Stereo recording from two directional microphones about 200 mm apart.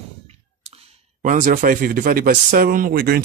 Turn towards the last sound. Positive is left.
turn(degrees=-50)  # may be behind; listen again after turning